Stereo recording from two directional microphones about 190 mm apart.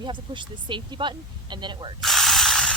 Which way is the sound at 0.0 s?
25° right (ahead or behind).